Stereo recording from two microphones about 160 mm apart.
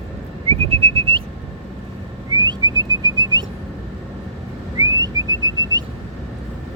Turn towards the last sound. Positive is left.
turn(degrees=-25)  # may be behind; listen again after turning